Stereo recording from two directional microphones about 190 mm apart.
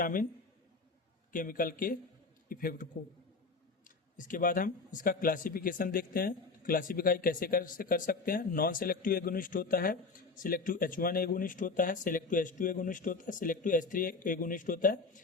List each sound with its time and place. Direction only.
0.0 s speech: 45° left (ahead or behind)
1.3 s speech: 45° left (ahead or behind)
3.8 s speech: 45° left (ahead or behind)